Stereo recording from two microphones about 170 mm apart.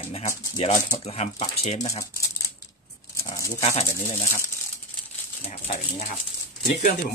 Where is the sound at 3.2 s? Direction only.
20° left (ahead or behind).